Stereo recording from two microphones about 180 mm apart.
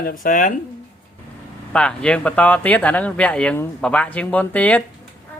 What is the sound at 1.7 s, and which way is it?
Speech, 5° left (ahead or behind).